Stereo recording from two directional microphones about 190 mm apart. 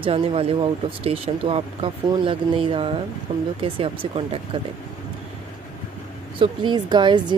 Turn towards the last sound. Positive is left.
turn(degrees=-25)  # may be behind; listen again after turning